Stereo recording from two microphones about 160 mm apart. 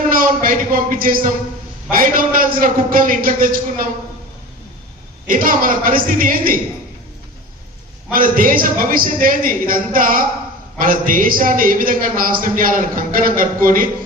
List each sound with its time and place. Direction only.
0.1 s a man's voice: 60° right (ahead or behind)
5.3 s a man's voice: 60° right (ahead or behind)
8.1 s a man's voice: 60° right (ahead or behind)